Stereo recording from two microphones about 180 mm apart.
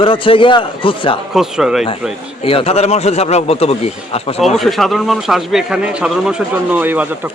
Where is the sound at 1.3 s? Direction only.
5° right (ahead or behind).